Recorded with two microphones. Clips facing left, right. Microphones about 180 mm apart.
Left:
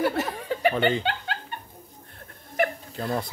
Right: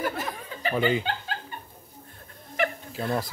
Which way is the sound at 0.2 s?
75° left (ahead or behind).